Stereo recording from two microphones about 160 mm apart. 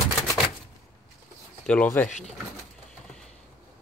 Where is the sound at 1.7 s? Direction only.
5° left (ahead or behind).